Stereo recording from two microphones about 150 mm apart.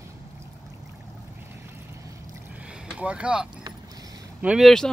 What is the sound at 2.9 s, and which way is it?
Speech, 10° right (ahead or behind).